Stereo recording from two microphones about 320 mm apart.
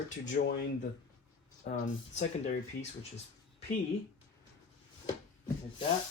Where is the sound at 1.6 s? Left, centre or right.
Left.